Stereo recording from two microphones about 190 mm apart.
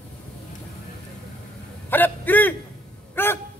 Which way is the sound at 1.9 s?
10° left (ahead or behind).